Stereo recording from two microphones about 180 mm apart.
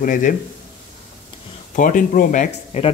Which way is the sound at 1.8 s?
50° left (ahead or behind).